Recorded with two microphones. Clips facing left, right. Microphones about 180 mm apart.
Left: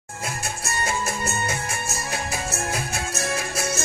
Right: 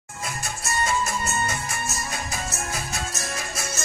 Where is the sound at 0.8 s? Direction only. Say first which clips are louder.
Even; 55° left (ahead or behind).